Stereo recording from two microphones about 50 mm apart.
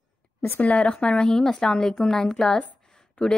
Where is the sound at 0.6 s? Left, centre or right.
Left.